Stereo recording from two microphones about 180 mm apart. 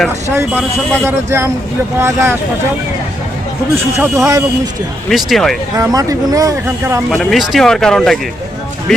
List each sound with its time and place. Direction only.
1.0 s speech: 15° right (ahead or behind)
3.9 s speech: 15° right (ahead or behind)
5.0 s speech: centre (ahead or behind)
5.7 s speech: 20° right (ahead or behind)
7.1 s speech: centre (ahead or behind)